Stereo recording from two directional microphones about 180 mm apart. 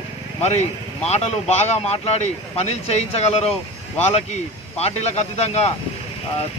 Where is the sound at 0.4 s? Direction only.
35° left (ahead or behind).